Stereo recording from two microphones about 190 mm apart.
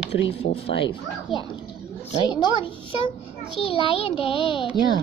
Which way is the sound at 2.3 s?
25° left (ahead or behind).